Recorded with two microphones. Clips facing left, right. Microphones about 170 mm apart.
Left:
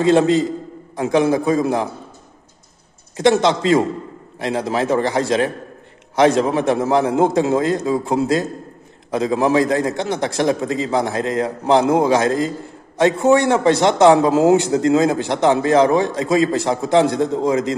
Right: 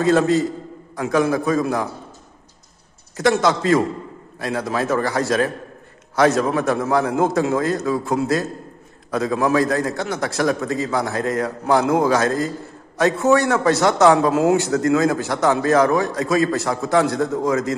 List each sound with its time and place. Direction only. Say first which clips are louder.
0.0 s a man's voice: left 2 dB; 20° left (ahead or behind)
3.2 s a man's voice: left 3 dB; 20° left (ahead or behind)